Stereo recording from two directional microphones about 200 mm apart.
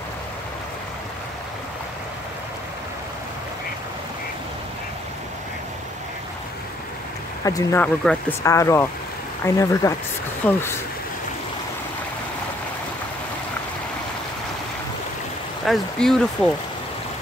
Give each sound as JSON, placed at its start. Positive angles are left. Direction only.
{"t": 7.4, "sound": "speech", "side_deg": 15}
{"t": 15.6, "sound": "speech", "side_deg": 0}